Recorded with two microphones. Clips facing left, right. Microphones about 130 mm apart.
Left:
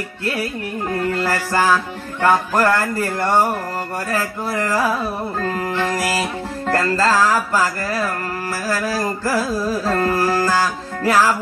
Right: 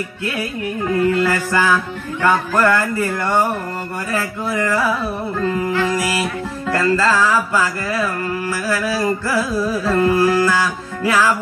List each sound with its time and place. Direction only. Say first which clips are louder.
0.9 s speech: right 4 dB; 35° left (ahead or behind)